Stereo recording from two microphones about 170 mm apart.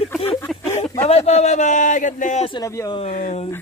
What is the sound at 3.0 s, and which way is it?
Speech, 45° left (ahead or behind).